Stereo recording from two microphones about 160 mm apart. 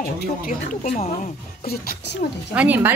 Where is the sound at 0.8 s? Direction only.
45° left (ahead or behind).